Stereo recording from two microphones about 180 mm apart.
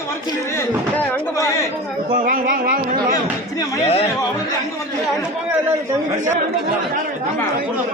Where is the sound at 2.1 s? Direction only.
50° right (ahead or behind).